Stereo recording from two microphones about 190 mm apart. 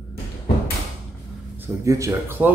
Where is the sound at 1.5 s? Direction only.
15° right (ahead or behind).